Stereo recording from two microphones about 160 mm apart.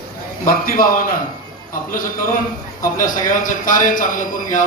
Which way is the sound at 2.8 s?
55° left (ahead or behind).